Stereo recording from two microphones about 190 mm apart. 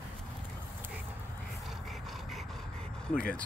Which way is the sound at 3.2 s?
5° left (ahead or behind).